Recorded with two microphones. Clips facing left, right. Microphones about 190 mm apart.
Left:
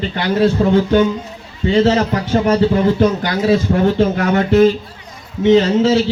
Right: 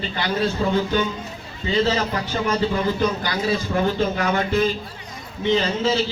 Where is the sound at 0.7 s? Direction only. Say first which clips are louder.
Left 8 dB; 60° left (ahead or behind).